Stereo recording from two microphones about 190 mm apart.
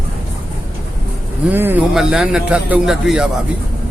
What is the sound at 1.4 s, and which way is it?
A man's voice, 10° right (ahead or behind).